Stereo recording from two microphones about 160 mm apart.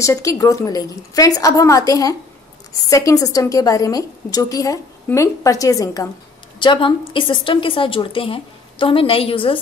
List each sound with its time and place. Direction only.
0.0 s a woman's voice: 20° left (ahead or behind)